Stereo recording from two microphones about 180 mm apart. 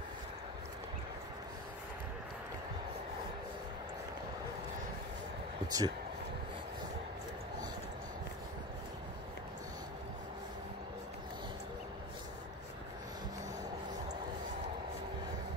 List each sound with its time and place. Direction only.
5.7 s speech: 20° right (ahead or behind)